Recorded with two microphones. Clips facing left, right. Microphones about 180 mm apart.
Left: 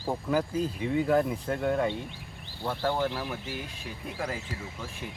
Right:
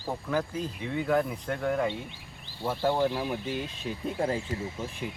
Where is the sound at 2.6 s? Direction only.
15° right (ahead or behind).